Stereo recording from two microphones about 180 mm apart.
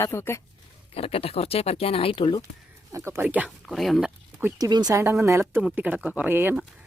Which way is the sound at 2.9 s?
15° right (ahead or behind).